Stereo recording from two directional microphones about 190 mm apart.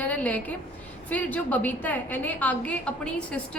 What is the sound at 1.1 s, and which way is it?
A woman's voice, 10° left (ahead or behind).